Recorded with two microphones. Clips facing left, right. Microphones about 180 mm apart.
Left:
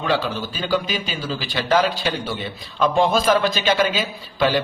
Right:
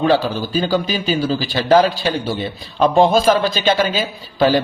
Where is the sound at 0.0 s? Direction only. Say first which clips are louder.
Right 6 dB; 35° right (ahead or behind).